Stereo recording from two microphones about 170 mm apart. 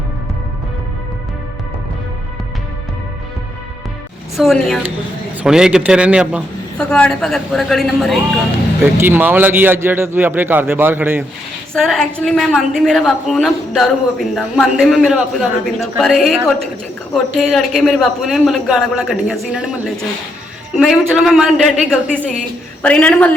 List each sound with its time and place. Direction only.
4.4 s a woman's voice: centre (ahead or behind)
6.7 s a woman's voice: 5° left (ahead or behind)
9.0 s a man's voice: 10° right (ahead or behind)
11.7 s a woman's voice: centre (ahead or behind)